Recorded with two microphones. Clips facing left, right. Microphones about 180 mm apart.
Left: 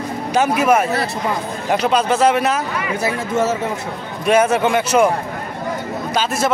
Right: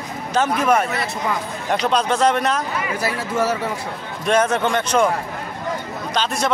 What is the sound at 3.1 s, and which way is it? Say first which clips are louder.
Speech: left 3 dB; 25° left (ahead or behind).